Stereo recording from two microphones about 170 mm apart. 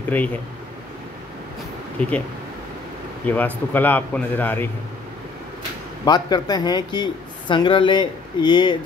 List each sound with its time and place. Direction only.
0.1 s a man's voice: 10° left (ahead or behind)
2.0 s speech: 10° left (ahead or behind)
3.3 s a man's voice: 10° left (ahead or behind)
6.0 s speech: 25° left (ahead or behind)